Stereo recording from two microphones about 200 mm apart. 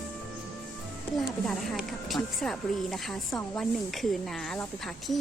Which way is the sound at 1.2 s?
Centre (ahead or behind).